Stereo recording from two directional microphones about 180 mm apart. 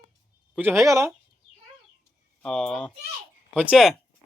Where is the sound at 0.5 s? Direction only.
10° right (ahead or behind).